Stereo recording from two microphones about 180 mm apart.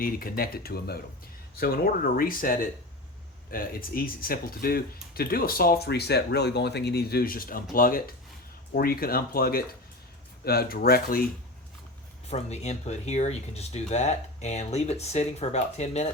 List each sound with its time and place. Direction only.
0.0 s speech: 55° left (ahead or behind)
12.3 s speech: 40° left (ahead or behind)